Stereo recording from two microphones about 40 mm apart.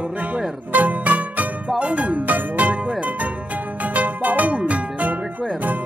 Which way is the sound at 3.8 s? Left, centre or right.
Right.